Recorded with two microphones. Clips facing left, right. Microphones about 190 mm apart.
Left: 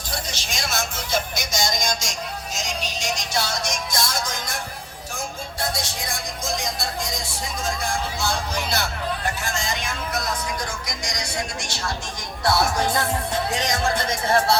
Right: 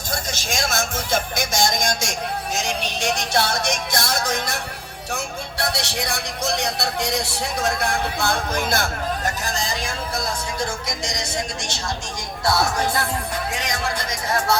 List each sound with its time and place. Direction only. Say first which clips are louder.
0.1 s music: right 4 dB; 45° right (ahead or behind); by 4.6 s 65° right (ahead or behind)
5.1 s speech: right 3 dB; 70° right (ahead or behind); by 11.3 s 25° right (ahead or behind)
14.1 s speech: left 1 dB; 30° left (ahead or behind)